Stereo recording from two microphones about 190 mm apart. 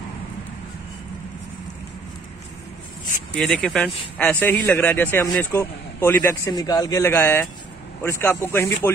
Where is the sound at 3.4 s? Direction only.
Centre (ahead or behind).